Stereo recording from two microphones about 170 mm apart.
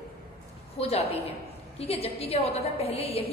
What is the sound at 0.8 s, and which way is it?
A woman's voice, 35° left (ahead or behind).